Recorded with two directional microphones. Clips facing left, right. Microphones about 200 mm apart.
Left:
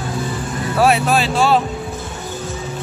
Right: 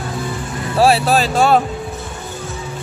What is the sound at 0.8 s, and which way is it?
Speech, 35° right (ahead or behind).